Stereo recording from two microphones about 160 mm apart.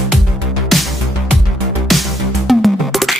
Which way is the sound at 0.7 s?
Centre (ahead or behind).